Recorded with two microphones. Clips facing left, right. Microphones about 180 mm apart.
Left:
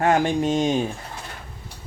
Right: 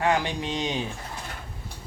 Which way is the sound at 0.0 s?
50° left (ahead or behind).